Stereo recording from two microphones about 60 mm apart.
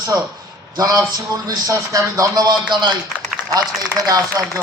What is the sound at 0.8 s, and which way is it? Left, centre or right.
A man's voice, right.